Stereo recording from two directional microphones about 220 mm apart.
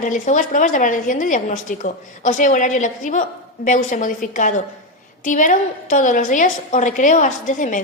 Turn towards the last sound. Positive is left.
turn(degrees=35)  # may be behind; listen again after turning